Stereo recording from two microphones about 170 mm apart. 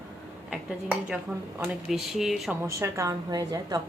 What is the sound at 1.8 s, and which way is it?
Speech, centre (ahead or behind).